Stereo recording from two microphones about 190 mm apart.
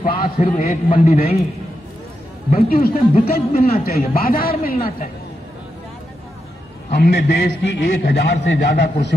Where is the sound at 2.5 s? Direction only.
50° left (ahead or behind).